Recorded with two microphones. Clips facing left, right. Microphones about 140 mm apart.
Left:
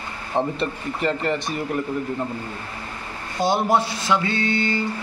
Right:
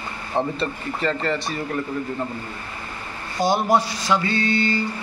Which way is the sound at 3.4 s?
25° left (ahead or behind).